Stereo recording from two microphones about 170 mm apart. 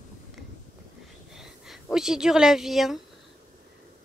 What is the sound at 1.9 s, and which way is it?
A woman's voice, 5° right (ahead or behind).